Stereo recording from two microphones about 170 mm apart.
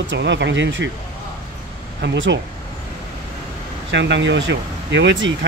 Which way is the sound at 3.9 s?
90° right.